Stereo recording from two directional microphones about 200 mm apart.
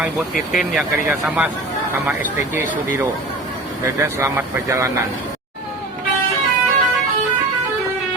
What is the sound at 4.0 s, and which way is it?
Speech, 15° right (ahead or behind).